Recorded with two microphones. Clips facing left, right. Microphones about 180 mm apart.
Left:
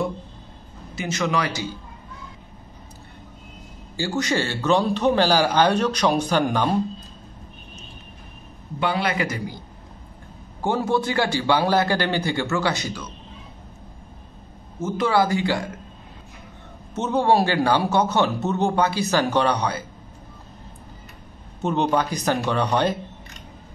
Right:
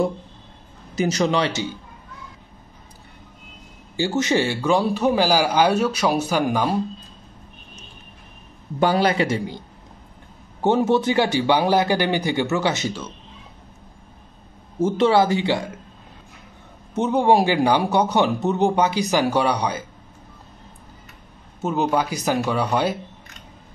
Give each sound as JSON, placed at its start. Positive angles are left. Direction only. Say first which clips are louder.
{"t": 0.9, "sound": "a man's voice", "louder": "right 4 dB", "side_deg": -35}
{"t": 3.9, "sound": "speech", "louder": "right 3 dB", "side_deg": -20}
{"t": 8.7, "sound": "a man's voice", "louder": "right 5 dB", "side_deg": -40}
{"t": 10.6, "sound": "a man's voice", "louder": "right 4 dB", "side_deg": -20}
{"t": 14.8, "sound": "a man's voice", "louder": "right 4 dB", "side_deg": -30}
{"t": 16.9, "sound": "speech", "louder": "right 2 dB", "side_deg": -15}
{"t": 21.6, "sound": "speech", "louder": "even", "side_deg": -5}